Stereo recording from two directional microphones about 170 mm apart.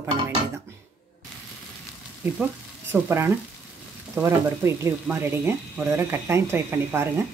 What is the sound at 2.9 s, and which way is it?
Speech, 15° right (ahead or behind).